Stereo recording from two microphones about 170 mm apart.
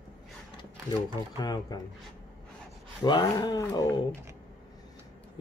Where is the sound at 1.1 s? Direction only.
25° left (ahead or behind).